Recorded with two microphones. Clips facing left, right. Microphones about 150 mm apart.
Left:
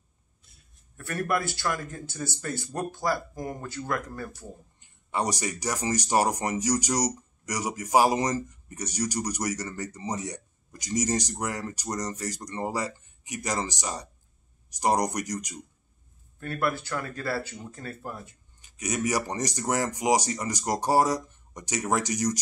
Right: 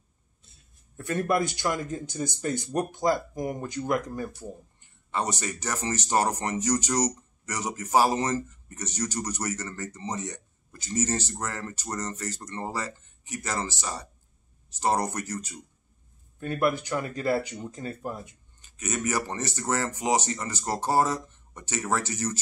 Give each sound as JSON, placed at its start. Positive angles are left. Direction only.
{"t": 0.9, "sound": "speech", "side_deg": -20}
{"t": 4.8, "sound": "speech", "side_deg": 15}
{"t": 16.3, "sound": "speech", "side_deg": -20}
{"t": 18.6, "sound": "speech", "side_deg": 10}